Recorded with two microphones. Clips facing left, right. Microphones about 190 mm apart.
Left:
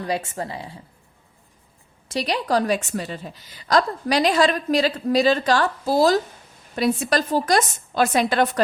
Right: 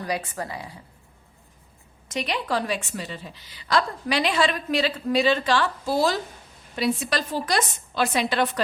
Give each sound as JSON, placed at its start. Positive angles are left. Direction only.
{"t": 0.0, "sound": "a woman's voice", "side_deg": 25}
{"t": 2.0, "sound": "a woman's voice", "side_deg": 35}